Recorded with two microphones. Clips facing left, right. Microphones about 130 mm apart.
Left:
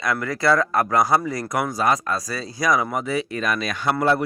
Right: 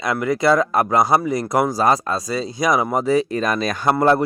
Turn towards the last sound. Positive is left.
turn(degrees=-45)  # may be behind; listen again after turning